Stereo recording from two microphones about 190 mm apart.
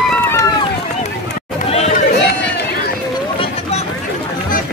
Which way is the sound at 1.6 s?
35° left (ahead or behind).